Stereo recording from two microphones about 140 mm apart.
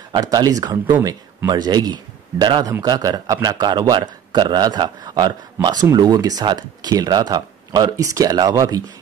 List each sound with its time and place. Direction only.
0.1 s a man's voice: 30° right (ahead or behind)